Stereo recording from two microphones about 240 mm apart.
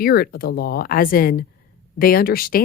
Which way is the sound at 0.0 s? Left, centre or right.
Left.